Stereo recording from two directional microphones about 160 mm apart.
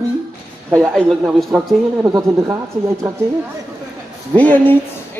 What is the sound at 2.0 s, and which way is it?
Speech, 20° right (ahead or behind).